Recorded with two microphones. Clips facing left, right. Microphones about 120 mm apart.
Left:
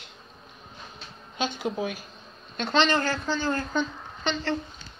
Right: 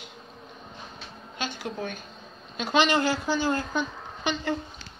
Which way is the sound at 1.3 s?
20° left (ahead or behind).